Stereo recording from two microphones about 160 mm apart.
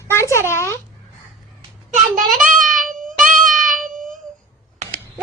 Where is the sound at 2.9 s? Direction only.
55° right (ahead or behind).